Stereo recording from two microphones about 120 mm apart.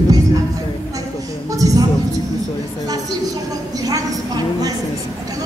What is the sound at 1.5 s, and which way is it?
Speech, 30° right (ahead or behind).